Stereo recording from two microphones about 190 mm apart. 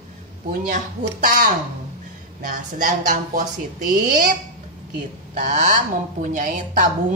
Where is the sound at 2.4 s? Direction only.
45° right (ahead or behind).